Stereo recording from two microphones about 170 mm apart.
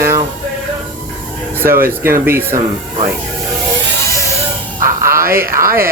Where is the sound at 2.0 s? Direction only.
15° right (ahead or behind).